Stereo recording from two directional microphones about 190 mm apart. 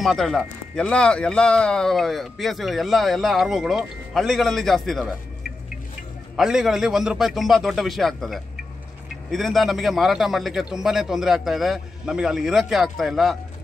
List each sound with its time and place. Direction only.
0.0 s speech: centre (ahead or behind)
6.3 s speech: centre (ahead or behind)